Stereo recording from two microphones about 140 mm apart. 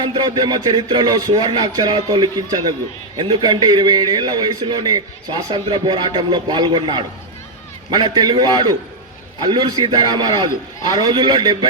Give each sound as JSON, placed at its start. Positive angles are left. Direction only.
{"t": 0.0, "sound": "a man's voice", "side_deg": -35}